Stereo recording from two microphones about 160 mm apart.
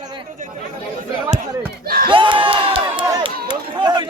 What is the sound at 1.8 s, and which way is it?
Speech, 65° right (ahead or behind).